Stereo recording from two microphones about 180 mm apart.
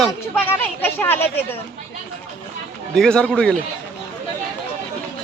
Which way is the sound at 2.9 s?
5° left (ahead or behind).